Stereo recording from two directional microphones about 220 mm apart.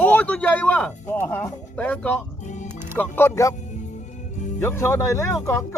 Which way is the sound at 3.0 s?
10° left (ahead or behind).